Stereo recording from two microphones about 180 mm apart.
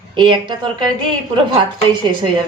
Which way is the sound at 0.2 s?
25° right (ahead or behind).